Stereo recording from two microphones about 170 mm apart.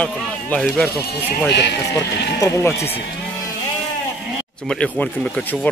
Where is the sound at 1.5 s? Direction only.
85° left.